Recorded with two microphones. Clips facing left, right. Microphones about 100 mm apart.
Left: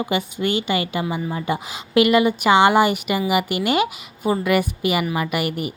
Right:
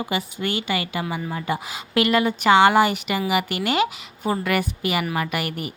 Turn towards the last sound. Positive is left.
turn(degrees=15)  # may be behind; listen again after turning